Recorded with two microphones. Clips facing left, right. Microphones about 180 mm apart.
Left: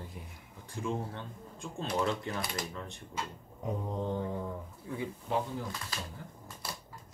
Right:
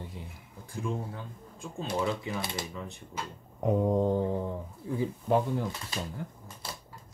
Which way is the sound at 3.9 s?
45° right (ahead or behind).